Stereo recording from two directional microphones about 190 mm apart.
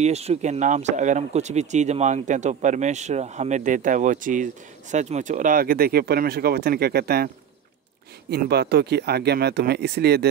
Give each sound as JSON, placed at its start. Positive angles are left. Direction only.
{"t": 0.0, "sound": "speech", "side_deg": -35}
{"t": 8.3, "sound": "speech", "side_deg": -60}